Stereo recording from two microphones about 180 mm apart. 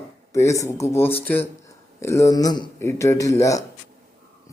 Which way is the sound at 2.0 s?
15° left (ahead or behind).